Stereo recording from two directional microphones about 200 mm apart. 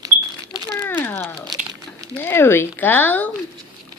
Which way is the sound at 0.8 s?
10° left (ahead or behind).